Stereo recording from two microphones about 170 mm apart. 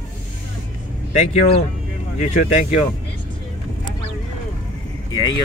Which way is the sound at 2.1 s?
45° left (ahead or behind).